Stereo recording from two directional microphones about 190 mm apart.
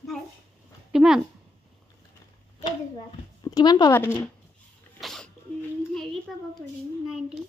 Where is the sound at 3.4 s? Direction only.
20° left (ahead or behind).